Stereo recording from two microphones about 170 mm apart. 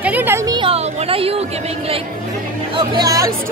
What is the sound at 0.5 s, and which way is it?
Speech, 35° right (ahead or behind).